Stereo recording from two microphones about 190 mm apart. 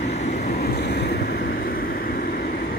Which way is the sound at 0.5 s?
55° left (ahead or behind).